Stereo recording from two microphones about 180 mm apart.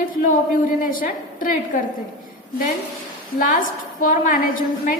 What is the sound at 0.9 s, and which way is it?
Speech, 50° left (ahead or behind).